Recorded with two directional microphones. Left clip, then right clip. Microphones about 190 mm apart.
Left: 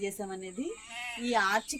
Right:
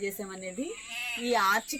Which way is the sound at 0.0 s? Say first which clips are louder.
Right 1 dB; 30° left (ahead or behind).